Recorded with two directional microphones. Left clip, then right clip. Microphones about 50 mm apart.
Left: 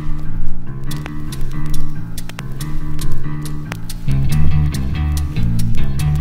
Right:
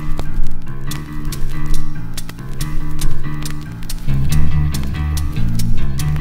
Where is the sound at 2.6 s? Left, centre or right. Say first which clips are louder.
Right 1 dB; left.